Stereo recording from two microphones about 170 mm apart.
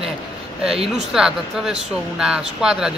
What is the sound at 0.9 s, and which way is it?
A woman's voice, 5° right (ahead or behind).